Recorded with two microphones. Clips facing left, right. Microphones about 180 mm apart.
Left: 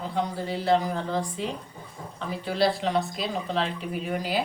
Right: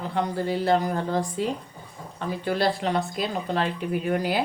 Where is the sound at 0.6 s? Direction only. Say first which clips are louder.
Left 1 dB; 50° right (ahead or behind).